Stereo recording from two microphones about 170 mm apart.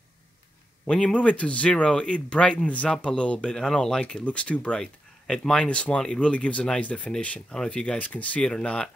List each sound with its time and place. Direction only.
0.8 s speech: 5° left (ahead or behind)